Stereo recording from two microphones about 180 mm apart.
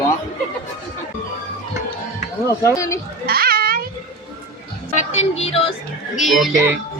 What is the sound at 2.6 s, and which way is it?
Speech, 20° left (ahead or behind).